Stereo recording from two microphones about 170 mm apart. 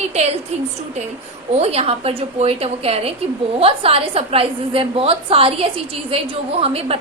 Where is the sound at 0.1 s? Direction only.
40° right (ahead or behind).